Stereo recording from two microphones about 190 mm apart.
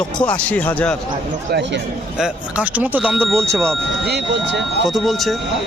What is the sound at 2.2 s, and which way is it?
Speech, 5° right (ahead or behind).